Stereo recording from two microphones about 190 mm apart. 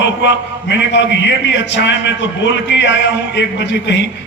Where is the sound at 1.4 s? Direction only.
70° left (ahead or behind).